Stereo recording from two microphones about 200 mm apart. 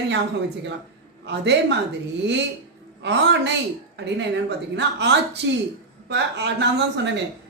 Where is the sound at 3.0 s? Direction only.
60° right (ahead or behind).